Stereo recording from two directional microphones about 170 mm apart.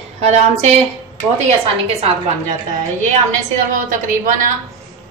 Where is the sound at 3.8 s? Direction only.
50° right (ahead or behind).